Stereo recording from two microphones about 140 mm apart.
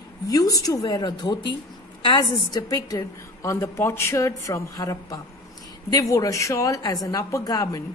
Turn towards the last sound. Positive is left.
turn(degrees=25)  # may be behind; listen again after turning